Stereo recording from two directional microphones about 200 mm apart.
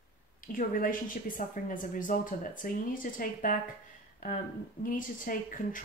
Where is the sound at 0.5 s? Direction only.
45° left (ahead or behind).